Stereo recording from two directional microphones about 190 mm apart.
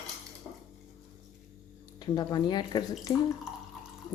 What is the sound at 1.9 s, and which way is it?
Speech, 20° left (ahead or behind).